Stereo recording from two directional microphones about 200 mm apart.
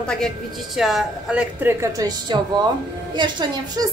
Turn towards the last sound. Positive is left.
turn(degrees=-20)  # may be behind; listen again after turning